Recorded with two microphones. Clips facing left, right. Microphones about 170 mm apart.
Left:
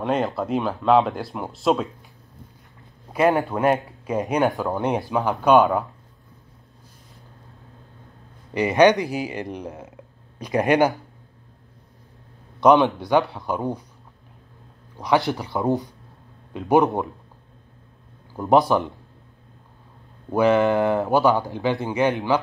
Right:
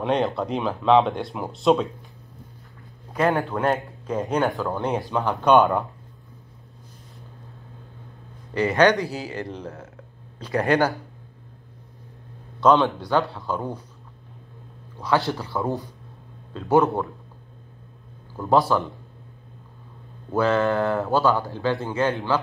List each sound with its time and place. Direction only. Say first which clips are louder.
0.0 s speech: even; centre (ahead or behind)
3.1 s speech: left 3 dB; 10° left (ahead or behind)
8.5 s speech: left 2 dB; 15° left (ahead or behind)
12.5 s speech: left 2 dB; 15° left (ahead or behind)
15.0 s speech: left 2 dB; 15° left (ahead or behind)
18.3 s speech: left 2 dB; 15° left (ahead or behind)
20.2 s speech: left 3 dB; 15° left (ahead or behind)